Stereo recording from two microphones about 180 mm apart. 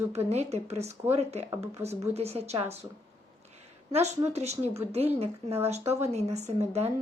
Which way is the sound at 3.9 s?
35° right (ahead or behind).